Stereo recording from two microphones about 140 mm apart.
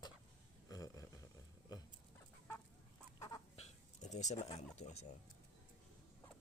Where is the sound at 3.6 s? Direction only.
55° left (ahead or behind).